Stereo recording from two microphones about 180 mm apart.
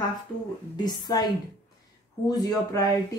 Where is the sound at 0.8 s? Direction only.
20° left (ahead or behind).